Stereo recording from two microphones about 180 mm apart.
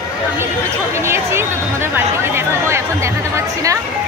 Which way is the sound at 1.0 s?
15° right (ahead or behind).